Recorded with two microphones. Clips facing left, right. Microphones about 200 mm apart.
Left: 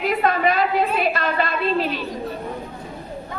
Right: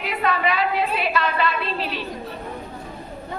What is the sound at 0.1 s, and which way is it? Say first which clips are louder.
A woman's voice: left 2 dB; 45° left (ahead or behind).